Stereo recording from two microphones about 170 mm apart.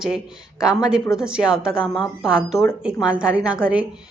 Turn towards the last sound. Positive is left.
turn(degrees=-5)  # may be behind; listen again after turning